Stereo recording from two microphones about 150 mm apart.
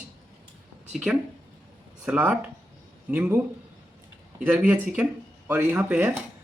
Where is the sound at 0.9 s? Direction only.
5° right (ahead or behind).